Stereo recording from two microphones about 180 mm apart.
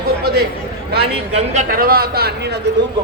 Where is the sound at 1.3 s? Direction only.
40° right (ahead or behind); by 2.6 s 65° right (ahead or behind).